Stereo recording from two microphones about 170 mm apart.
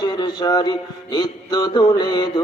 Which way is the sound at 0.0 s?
25° left (ahead or behind).